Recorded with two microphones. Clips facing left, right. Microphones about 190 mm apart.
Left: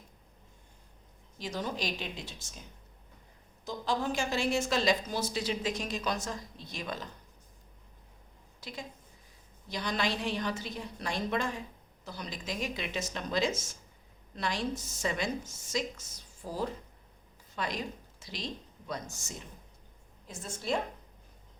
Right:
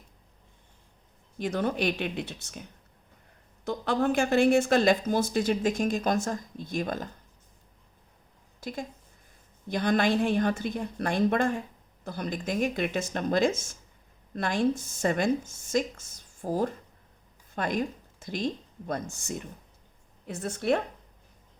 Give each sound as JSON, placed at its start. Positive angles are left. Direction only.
{"t": 1.4, "sound": "a woman's voice", "side_deg": -60}
{"t": 8.6, "sound": "a woman's voice", "side_deg": -50}